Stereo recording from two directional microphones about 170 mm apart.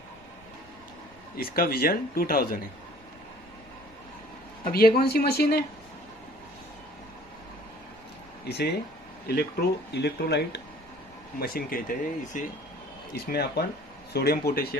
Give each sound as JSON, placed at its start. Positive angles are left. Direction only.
{"t": 1.3, "sound": "speech", "side_deg": 60}
{"t": 4.7, "sound": "speech", "side_deg": 60}
{"t": 8.5, "sound": "speech", "side_deg": 75}
{"t": 11.3, "sound": "speech", "side_deg": 60}
{"t": 13.1, "sound": "speech", "side_deg": 65}